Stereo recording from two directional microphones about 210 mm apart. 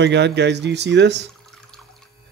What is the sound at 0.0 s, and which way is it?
Speech, 55° right (ahead or behind).